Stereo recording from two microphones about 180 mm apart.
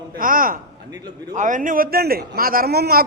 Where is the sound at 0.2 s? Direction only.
50° right (ahead or behind).